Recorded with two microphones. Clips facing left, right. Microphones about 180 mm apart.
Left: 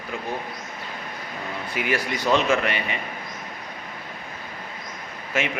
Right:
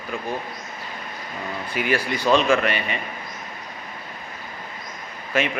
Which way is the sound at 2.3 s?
20° left (ahead or behind).